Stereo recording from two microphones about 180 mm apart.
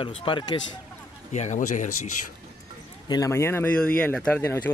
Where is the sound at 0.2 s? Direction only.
30° left (ahead or behind).